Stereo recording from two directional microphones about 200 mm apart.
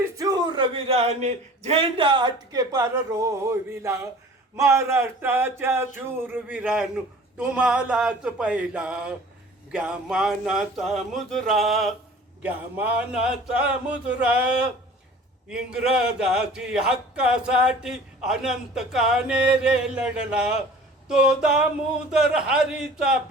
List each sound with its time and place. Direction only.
0.2 s a man's voice: 20° right (ahead or behind)
4.5 s a sound: 15° right (ahead or behind)
6.1 s a man's voice: 10° right (ahead or behind)